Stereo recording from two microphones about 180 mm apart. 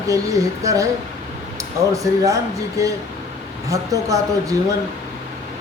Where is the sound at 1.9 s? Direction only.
20° right (ahead or behind).